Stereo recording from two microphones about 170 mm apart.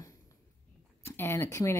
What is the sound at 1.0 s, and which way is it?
Speech, 15° left (ahead or behind).